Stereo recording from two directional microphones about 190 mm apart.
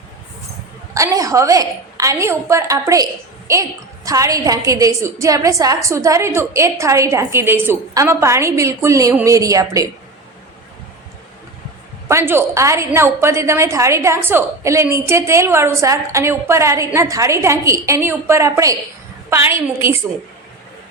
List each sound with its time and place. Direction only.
0.9 s a woman's voice: 15° right (ahead or behind)
12.0 s a woman's voice: 15° right (ahead or behind)